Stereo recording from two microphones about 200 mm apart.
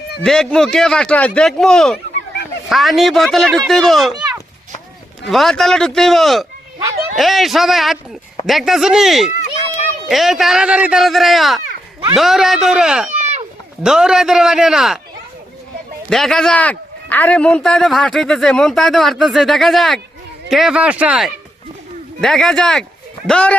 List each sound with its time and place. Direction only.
0.2 s a man's voice: 5° left (ahead or behind)
5.3 s a man's voice: centre (ahead or behind)
13.1 s a sound: 35° right (ahead or behind)
13.8 s a man's voice: 5° right (ahead or behind)
16.0 s a man's voice: centre (ahead or behind)